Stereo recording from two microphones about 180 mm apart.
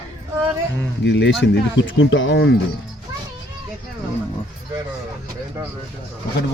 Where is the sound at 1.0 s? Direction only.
75° left (ahead or behind).